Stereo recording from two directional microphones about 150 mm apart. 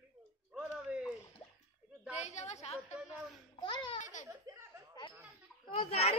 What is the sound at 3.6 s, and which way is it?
Speech, 35° left (ahead or behind).